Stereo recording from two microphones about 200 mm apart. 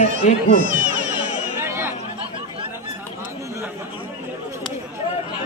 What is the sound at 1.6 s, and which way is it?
Chatter, 10° right (ahead or behind).